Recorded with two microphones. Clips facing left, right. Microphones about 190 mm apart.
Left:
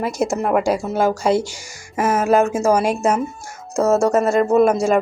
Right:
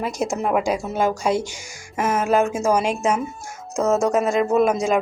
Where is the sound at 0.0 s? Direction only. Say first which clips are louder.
Left 3 dB; 5° left (ahead or behind).